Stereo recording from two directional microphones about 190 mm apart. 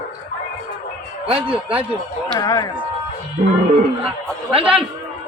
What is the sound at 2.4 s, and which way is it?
Speech, 20° left (ahead or behind).